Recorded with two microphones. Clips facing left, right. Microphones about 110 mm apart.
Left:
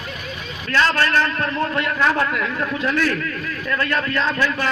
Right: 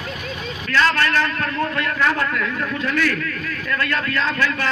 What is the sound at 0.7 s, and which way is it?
Speech, 30° left (ahead or behind).